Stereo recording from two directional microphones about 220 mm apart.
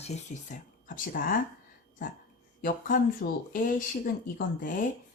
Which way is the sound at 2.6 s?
40° left (ahead or behind).